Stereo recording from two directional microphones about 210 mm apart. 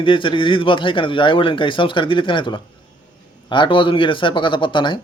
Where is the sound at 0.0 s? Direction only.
25° left (ahead or behind).